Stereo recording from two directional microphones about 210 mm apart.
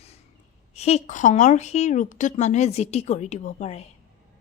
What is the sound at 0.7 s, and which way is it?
A woman's voice, 30° left (ahead or behind).